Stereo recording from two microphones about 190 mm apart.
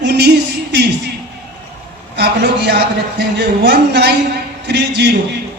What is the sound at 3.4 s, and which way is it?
Speech, 60° right (ahead or behind).